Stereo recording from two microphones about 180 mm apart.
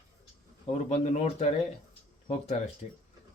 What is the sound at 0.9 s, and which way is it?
Speech, 40° left (ahead or behind).